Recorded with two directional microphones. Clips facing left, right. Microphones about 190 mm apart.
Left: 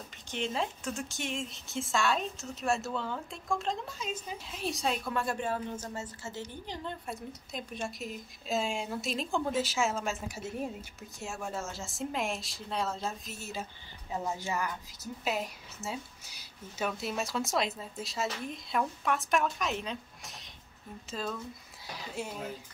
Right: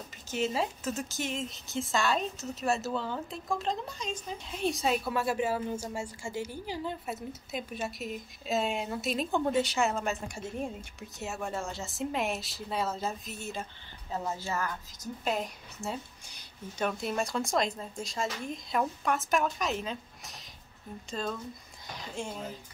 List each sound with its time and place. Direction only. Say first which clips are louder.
0.3 s speech: right 3 dB; 5° right (ahead or behind)
14.1 s a woman's voice: even; 15° left (ahead or behind)
15.2 s a woman's voice: right 2 dB; 5° left (ahead or behind)